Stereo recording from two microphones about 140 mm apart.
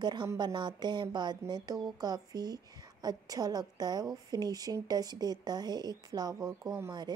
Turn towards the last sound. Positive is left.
turn(degrees=-25)  # may be behind; listen again after turning